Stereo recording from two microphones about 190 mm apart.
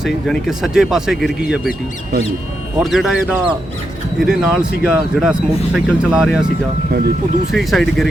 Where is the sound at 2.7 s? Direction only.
Centre (ahead or behind).